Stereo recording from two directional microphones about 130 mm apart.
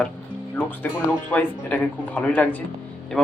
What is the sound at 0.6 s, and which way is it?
Speech, 20° left (ahead or behind).